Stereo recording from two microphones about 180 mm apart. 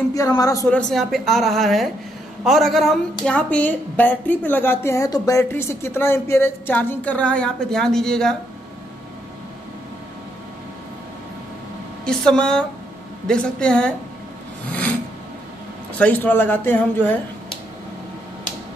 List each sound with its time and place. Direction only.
0.1 s a man's voice: 20° left (ahead or behind)
0.7 s a woman's voice: 5° left (ahead or behind)
12.0 s speech: 5° left (ahead or behind)
14.7 s a sound: 10° left (ahead or behind)
16.0 s a woman's voice: 10° left (ahead or behind)